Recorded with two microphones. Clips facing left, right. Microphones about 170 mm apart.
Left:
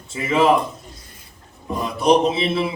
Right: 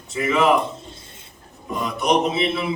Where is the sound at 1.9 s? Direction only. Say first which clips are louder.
Left 4 dB; 30° left (ahead or behind).